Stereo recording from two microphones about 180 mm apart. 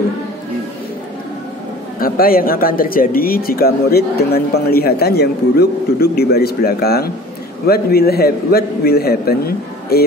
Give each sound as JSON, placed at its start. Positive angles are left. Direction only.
{"t": 2.0, "sound": "speech", "side_deg": 55}